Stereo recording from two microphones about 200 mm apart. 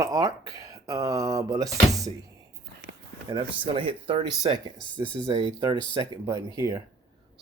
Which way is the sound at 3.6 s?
25° right (ahead or behind).